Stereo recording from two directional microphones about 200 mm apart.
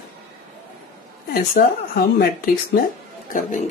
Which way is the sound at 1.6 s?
55° left (ahead or behind).